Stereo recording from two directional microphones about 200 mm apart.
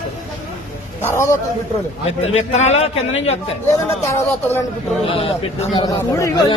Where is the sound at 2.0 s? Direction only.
30° left (ahead or behind).